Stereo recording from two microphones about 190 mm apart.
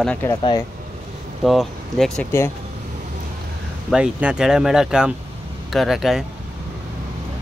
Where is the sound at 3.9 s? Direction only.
5° right (ahead or behind).